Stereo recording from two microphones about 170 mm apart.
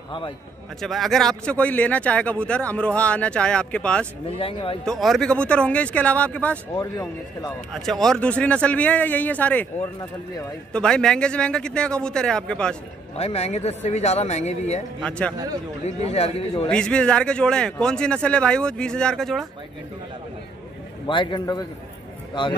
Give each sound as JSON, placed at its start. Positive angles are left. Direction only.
{"t": 0.7, "sound": "speech", "side_deg": 0}
{"t": 4.4, "sound": "speech", "side_deg": 35}
{"t": 4.8, "sound": "speech", "side_deg": 0}
{"t": 7.7, "sound": "a man's voice", "side_deg": 0}
{"t": 13.2, "sound": "speech", "side_deg": 40}
{"t": 15.0, "sound": "speech", "side_deg": 5}
{"t": 16.1, "sound": "speech", "side_deg": 35}
{"t": 16.6, "sound": "a man's voice", "side_deg": 5}
{"t": 21.1, "sound": "a man's voice", "side_deg": 30}